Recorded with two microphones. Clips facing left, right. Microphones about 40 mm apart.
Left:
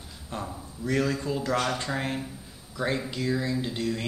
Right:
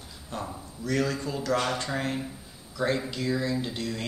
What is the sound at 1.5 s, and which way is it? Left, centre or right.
Speech, left.